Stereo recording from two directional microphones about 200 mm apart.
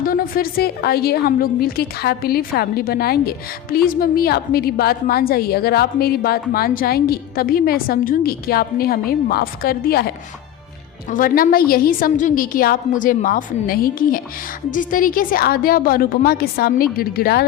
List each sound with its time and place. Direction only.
0.0 s a woman's voice: 45° left (ahead or behind)
11.1 s a woman's voice: 45° left (ahead or behind)